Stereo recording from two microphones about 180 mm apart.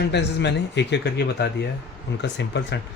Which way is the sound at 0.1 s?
70° left (ahead or behind).